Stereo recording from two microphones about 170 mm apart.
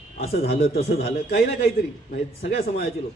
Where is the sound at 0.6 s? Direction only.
40° left (ahead or behind).